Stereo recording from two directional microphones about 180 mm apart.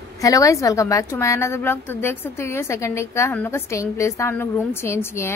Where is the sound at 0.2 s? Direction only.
20° left (ahead or behind).